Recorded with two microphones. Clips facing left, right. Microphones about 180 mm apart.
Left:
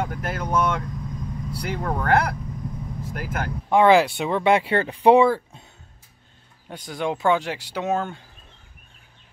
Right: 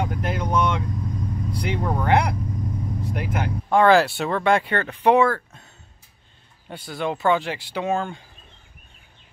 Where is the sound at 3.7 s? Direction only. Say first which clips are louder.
Even; 20° left (ahead or behind).